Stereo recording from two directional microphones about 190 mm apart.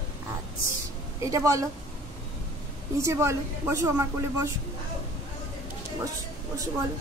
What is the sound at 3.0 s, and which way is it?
A woman's voice, 15° right (ahead or behind).